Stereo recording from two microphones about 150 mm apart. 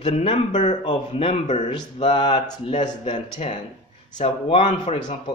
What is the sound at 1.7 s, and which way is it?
Speech, 30° left (ahead or behind).